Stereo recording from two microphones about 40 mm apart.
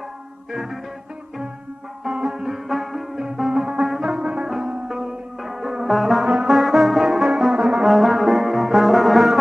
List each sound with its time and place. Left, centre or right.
0.5 s music: centre
2.0 s music: centre
2.4 s music: centre
3.4 s music: centre
4.8 s music: centre
6.4 s brass instrument: centre
7.8 s brass instrument: centre